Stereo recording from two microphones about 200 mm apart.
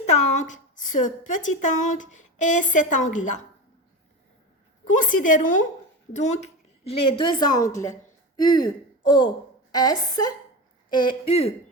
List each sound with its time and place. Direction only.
0.0 s a woman's voice: 35° left (ahead or behind)
4.9 s a woman's voice: 40° left (ahead or behind)